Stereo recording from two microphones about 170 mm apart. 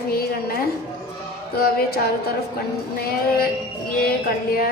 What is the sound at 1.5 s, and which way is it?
Speech, 65° left (ahead or behind).